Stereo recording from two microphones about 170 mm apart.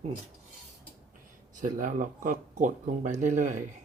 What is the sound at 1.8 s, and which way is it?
Speech, 50° right (ahead or behind).